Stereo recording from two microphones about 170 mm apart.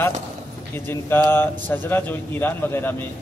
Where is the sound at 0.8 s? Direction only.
15° left (ahead or behind).